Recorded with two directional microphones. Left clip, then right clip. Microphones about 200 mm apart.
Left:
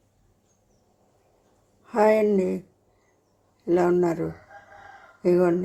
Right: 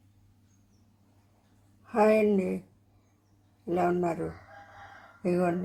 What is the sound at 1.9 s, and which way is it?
Speech, 15° left (ahead or behind).